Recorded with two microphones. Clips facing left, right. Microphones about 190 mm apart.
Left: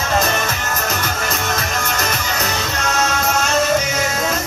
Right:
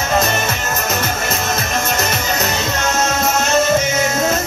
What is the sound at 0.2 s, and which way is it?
Music, 25° right (ahead or behind).